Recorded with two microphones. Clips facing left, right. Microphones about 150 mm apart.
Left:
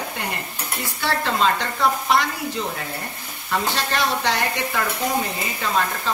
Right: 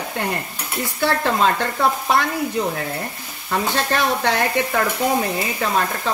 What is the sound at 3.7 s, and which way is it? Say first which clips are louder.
Stir: right 3 dB; 55° right (ahead or behind).